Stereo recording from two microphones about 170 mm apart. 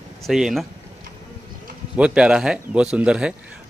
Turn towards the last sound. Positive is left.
turn(degrees=-5)  # may be behind; listen again after turning